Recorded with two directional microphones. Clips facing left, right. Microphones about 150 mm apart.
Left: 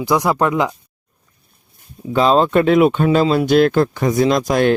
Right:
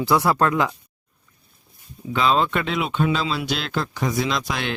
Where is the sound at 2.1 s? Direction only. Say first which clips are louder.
Left 7 dB; 40° left (ahead or behind).